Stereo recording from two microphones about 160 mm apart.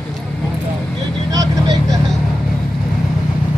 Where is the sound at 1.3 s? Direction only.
20° right (ahead or behind).